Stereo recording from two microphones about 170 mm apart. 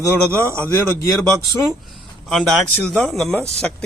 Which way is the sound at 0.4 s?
15° right (ahead or behind).